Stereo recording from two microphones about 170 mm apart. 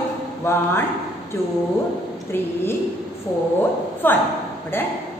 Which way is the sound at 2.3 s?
15° left (ahead or behind).